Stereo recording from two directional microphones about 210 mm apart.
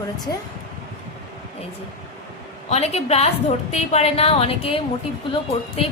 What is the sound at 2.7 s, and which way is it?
A woman's voice, 30° left (ahead or behind).